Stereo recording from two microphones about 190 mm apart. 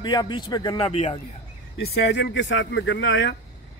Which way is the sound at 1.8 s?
60° left (ahead or behind).